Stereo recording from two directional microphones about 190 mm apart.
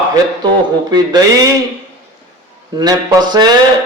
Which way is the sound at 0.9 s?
20° right (ahead or behind).